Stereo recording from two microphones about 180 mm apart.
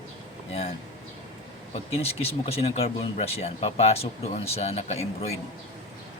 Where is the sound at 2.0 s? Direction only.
35° left (ahead or behind).